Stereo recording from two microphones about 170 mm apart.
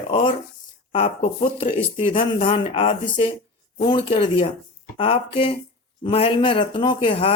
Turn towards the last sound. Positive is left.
turn(degrees=30)  # may be behind; listen again after turning